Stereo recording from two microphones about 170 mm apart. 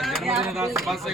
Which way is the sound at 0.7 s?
Centre (ahead or behind).